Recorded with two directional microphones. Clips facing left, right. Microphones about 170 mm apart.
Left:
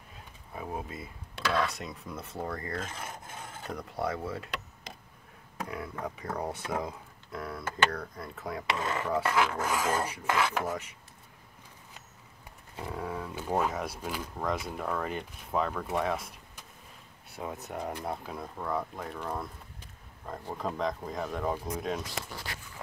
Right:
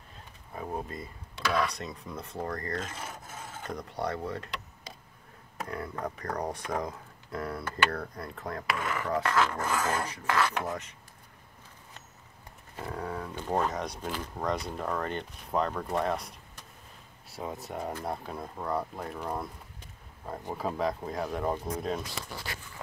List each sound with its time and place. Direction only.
0.6 s speech: 5° left (ahead or behind)
5.7 s speech: 5° left (ahead or behind)
8.6 s speech: 25° left (ahead or behind)
9.1 s filing: 10° left (ahead or behind)
12.7 s speech: 5° left (ahead or behind)
17.4 s speech: centre (ahead or behind)